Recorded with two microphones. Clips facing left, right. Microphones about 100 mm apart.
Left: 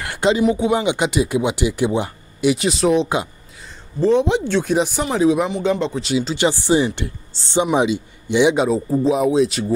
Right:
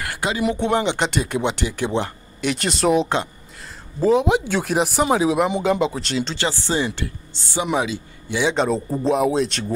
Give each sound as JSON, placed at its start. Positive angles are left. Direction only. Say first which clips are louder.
{"t": 0.1, "sound": "a sound", "louder": "left 9 dB", "side_deg": 25}
{"t": 0.4, "sound": "speech", "louder": "left 3 dB", "side_deg": 0}
{"t": 6.3, "sound": "speech", "louder": "left 9 dB", "side_deg": 15}
{"t": 7.3, "sound": "speech", "louder": "left 5 dB", "side_deg": 30}
{"t": 8.5, "sound": "speech", "louder": "left 3 dB", "side_deg": 5}